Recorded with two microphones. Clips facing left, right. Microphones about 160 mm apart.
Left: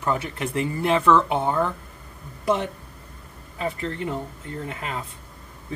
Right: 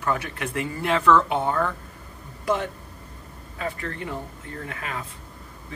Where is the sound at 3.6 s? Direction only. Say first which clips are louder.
Left 3 dB; 25° left (ahead or behind).